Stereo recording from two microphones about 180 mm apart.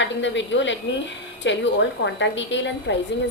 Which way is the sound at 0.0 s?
90° left.